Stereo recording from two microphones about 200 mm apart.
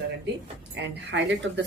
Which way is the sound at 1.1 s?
60° right (ahead or behind).